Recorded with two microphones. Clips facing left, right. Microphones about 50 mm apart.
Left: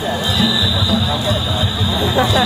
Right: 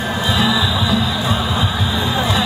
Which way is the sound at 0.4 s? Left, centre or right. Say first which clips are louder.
Right 1 dB; right.